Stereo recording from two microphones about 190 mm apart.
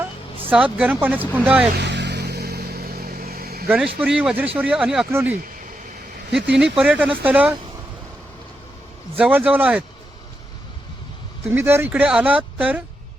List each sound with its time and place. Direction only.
0.5 s speech: 5° right (ahead or behind)
1.8 s vehicle: 65° right (ahead or behind)
4.0 s speech: 5° right (ahead or behind)
9.1 s speech: 5° right (ahead or behind)
11.4 s speech: 15° right (ahead or behind)